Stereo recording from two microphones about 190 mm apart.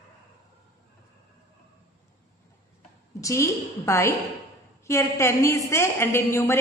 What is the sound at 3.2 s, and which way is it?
A woman's voice, 15° left (ahead or behind).